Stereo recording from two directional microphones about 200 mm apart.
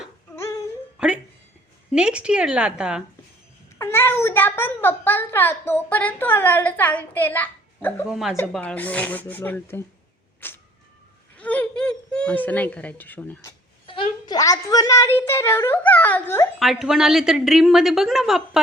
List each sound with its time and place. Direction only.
0.9 s a woman's voice: 5° right (ahead or behind)
3.8 s a child's voice: 10° left (ahead or behind)
8.1 s a woman's voice: centre (ahead or behind)
10.4 s cat: 10° left (ahead or behind)
11.3 s a sound: 5° left (ahead or behind)
13.8 s a woman's voice: 25° left (ahead or behind)
16.6 s a woman's voice: centre (ahead or behind)